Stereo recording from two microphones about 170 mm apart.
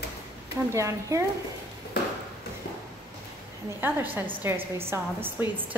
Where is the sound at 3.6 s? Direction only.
10° right (ahead or behind).